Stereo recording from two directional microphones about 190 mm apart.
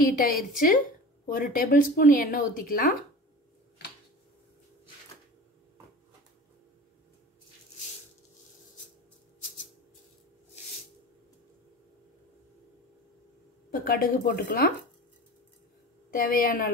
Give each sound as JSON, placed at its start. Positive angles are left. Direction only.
{"t": 0.3, "sound": "speech", "side_deg": 50}
{"t": 13.7, "sound": "speech", "side_deg": 50}
{"t": 16.1, "sound": "speech", "side_deg": 50}